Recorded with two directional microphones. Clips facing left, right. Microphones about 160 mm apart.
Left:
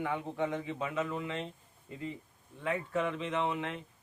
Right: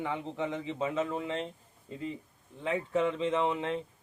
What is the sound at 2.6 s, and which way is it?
A man's voice, 25° right (ahead or behind).